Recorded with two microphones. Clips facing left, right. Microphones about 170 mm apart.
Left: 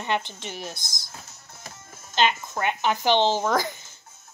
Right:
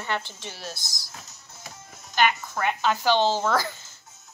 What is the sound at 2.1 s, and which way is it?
Speech, 20° left (ahead or behind).